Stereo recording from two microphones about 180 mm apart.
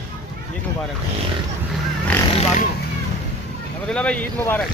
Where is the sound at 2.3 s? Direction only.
35° left (ahead or behind).